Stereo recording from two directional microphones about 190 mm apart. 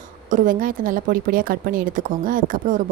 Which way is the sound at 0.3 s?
45° right (ahead or behind).